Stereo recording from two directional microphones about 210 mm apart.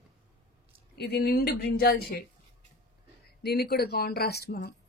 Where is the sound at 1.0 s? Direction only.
50° left (ahead or behind).